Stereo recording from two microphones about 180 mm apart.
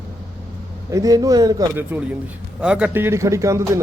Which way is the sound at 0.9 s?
20° right (ahead or behind).